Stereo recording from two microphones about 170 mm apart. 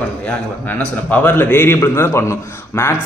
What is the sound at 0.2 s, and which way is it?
A man's voice, 10° left (ahead or behind).